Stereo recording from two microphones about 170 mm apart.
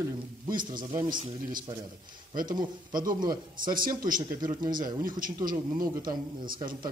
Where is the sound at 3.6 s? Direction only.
55° right (ahead or behind).